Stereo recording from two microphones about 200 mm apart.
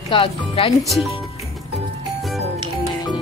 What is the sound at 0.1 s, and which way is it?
Speech, 25° left (ahead or behind).